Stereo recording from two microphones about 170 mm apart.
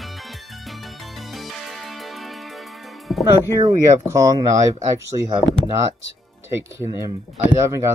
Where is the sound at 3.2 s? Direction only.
20° right (ahead or behind).